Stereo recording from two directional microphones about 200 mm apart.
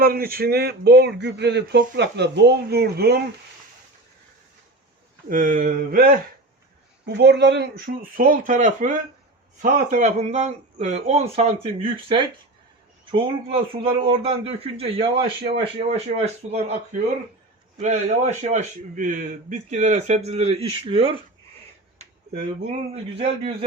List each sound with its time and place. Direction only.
0.0 s speech: 50° right (ahead or behind)
5.3 s speech: 40° right (ahead or behind)
7.0 s speech: 55° right (ahead or behind)
8.1 s a man's voice: 45° right (ahead or behind); by 21.2 s 25° right (ahead or behind)
21.9 s a sound: 35° right (ahead or behind)
23.1 s a man's voice: 30° right (ahead or behind)